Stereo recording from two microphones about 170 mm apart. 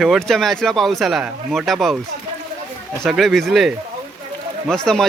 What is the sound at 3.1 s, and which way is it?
Speech, centre (ahead or behind).